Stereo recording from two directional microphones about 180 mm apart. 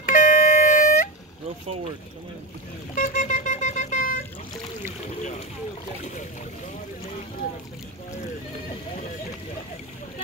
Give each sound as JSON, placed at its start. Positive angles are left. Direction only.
{"t": 0.0, "sound": "music", "side_deg": 45}
{"t": 2.9, "sound": "vehicle", "side_deg": 45}
{"t": 5.0, "sound": "boat", "side_deg": 35}